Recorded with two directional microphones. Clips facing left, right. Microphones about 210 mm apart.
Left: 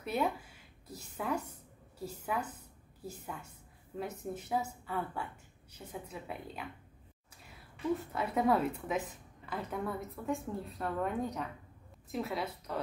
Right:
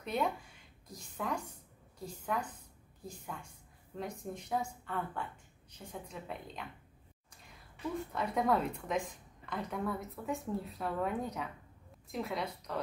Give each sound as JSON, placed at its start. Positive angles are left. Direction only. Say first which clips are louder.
{"t": 0.0, "sound": "a sound", "louder": "left 1 dB", "side_deg": 5}
{"t": 2.0, "sound": "a woman's voice", "louder": "left 1 dB", "side_deg": 5}
{"t": 8.1, "sound": "a woman's voice", "louder": "even", "side_deg": 5}